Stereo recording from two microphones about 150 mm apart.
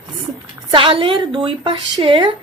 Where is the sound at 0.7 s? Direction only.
35° right (ahead or behind).